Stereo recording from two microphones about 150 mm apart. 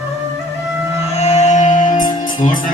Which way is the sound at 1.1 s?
50° left (ahead or behind).